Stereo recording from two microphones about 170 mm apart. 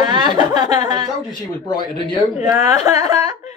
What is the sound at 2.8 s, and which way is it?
Speech, 20° right (ahead or behind).